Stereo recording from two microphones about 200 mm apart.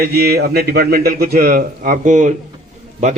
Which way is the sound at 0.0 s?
50° right (ahead or behind).